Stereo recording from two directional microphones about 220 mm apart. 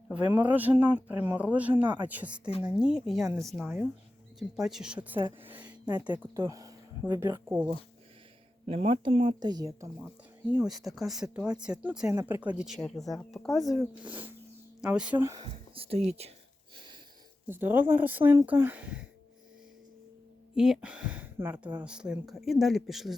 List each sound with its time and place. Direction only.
0.1 s speech: 5° right (ahead or behind)
5.2 s speech: 25° right (ahead or behind); by 7.7 s 10° right (ahead or behind)
8.6 s speech: 25° right (ahead or behind)
10.5 s speech: centre (ahead or behind); by 16.3 s 30° right (ahead or behind)
17.5 s speech: 10° right (ahead or behind)
20.6 s speech: 5° right (ahead or behind)